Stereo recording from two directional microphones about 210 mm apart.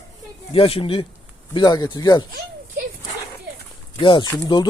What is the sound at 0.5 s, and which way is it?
Speech, 25° left (ahead or behind).